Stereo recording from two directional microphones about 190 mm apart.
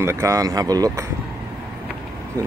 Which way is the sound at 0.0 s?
15° right (ahead or behind).